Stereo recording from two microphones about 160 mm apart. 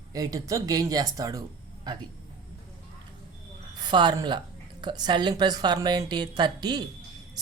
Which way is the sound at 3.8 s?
30° right (ahead or behind).